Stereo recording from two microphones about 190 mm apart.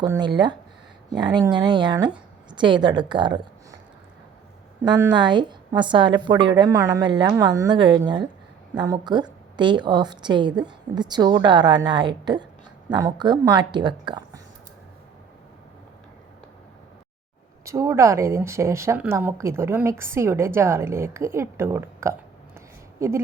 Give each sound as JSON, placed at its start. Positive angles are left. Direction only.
{"t": 0.0, "sound": "a woman's voice", "side_deg": -20}
{"t": 4.8, "sound": "a woman's voice", "side_deg": -20}
{"t": 17.7, "sound": "a woman's voice", "side_deg": -15}